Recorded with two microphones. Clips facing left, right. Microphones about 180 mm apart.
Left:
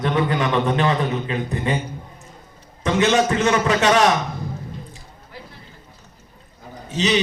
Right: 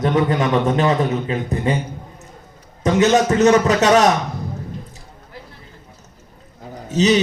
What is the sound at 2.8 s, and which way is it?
A man's voice, 40° right (ahead or behind).